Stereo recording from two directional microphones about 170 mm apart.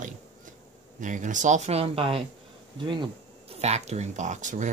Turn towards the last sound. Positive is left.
turn(degrees=-45)  # may be behind; listen again after turning